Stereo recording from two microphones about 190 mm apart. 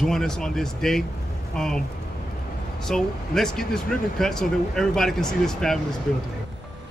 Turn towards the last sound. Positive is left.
turn(degrees=5)  # may be behind; listen again after turning